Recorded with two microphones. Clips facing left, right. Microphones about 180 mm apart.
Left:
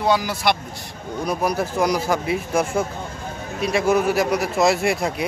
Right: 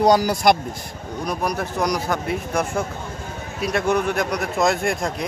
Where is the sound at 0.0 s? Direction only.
40° right (ahead or behind).